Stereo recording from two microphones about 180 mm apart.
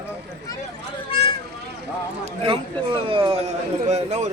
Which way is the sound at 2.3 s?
30° right (ahead or behind).